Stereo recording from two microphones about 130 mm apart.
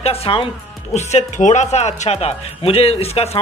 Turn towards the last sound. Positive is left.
turn(degrees=50)  # may be behind; listen again after turning